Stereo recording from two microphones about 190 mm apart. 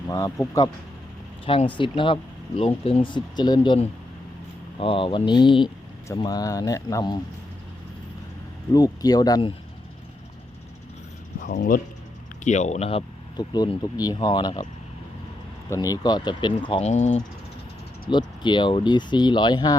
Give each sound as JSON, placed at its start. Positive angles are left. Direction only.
{"t": 0.1, "sound": "speech", "side_deg": 15}
{"t": 1.5, "sound": "speech", "side_deg": 30}
{"t": 8.7, "sound": "speech", "side_deg": 20}
{"t": 11.4, "sound": "speech", "side_deg": 50}
{"t": 12.5, "sound": "speech", "side_deg": 35}
{"t": 13.3, "sound": "speech", "side_deg": 20}
{"t": 15.7, "sound": "speech", "side_deg": 15}
{"t": 18.1, "sound": "speech", "side_deg": 25}